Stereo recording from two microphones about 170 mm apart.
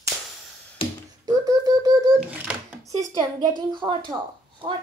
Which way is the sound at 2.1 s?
5° right (ahead or behind).